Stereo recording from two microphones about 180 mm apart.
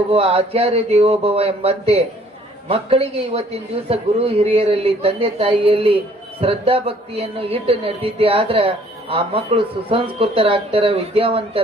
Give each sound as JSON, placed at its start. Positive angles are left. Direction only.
{"t": 0.1, "sound": "a man's voice", "side_deg": -35}